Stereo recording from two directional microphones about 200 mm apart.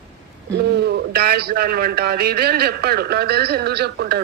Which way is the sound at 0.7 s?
55° right (ahead or behind).